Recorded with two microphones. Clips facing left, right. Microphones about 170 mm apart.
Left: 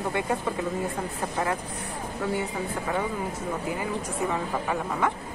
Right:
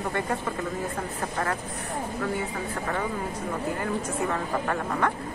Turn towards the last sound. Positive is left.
turn(degrees=10)  # may be behind; listen again after turning